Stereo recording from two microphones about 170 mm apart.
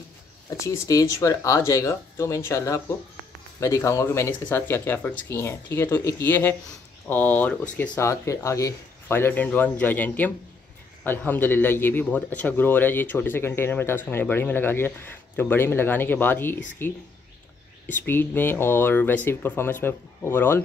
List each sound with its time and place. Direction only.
0.5 s speech: 20° left (ahead or behind)